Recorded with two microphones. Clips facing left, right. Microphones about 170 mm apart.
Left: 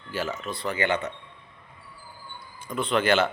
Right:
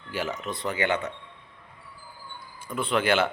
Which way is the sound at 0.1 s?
15° right (ahead or behind).